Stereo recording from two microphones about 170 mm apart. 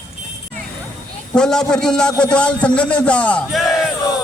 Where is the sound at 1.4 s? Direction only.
5° left (ahead or behind).